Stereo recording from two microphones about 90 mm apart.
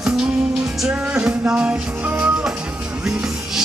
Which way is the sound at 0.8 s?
10° right (ahead or behind).